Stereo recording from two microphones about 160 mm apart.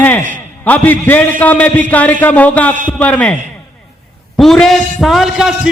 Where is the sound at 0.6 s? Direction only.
10° left (ahead or behind).